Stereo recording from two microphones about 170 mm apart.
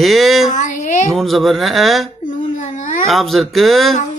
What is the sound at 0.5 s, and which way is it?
Speech, 45° left (ahead or behind).